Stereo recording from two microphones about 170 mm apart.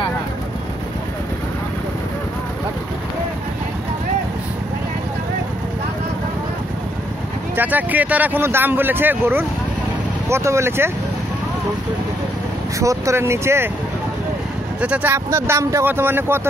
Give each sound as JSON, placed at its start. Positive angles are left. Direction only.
{"t": 7.5, "sound": "speech", "side_deg": -10}
{"t": 12.7, "sound": "speech", "side_deg": -20}
{"t": 14.8, "sound": "speech", "side_deg": -10}